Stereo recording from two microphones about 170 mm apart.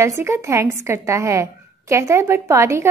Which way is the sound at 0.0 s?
15° right (ahead or behind).